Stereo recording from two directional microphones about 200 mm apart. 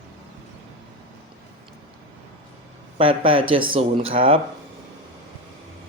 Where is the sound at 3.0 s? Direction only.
25° right (ahead or behind).